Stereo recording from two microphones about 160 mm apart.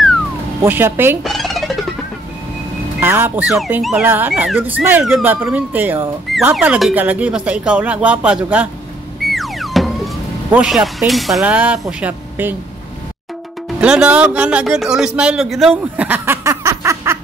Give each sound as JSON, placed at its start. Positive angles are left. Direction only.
{"t": 0.7, "sound": "speech", "side_deg": -15}
{"t": 1.2, "sound": "music", "side_deg": 0}
{"t": 3.0, "sound": "speech", "side_deg": -15}
{"t": 4.3, "sound": "a man's voice", "side_deg": 0}
{"t": 4.6, "sound": "speech", "side_deg": -10}
{"t": 6.3, "sound": "music", "side_deg": 0}
{"t": 6.6, "sound": "speech", "side_deg": -10}
{"t": 9.2, "sound": "a sound", "side_deg": 0}
{"t": 12.0, "sound": "a woman's voice", "side_deg": -10}
{"t": 13.7, "sound": "a man's voice", "side_deg": -5}
{"t": 15.7, "sound": "a sound", "side_deg": -10}